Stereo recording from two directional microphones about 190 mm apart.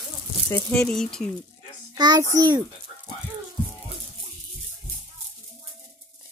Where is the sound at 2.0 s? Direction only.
20° right (ahead or behind).